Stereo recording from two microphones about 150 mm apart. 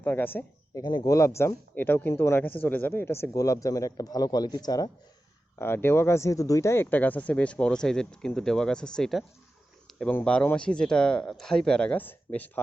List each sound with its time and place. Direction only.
0.0 s speech: 15° left (ahead or behind)
0.8 s speech: 25° left (ahead or behind)
5.5 s speech: 15° left (ahead or behind)
9.8 s a sound: 5° left (ahead or behind)
10.2 s speech: 10° left (ahead or behind)